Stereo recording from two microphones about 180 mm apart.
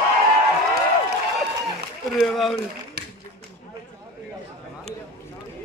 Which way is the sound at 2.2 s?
Centre (ahead or behind).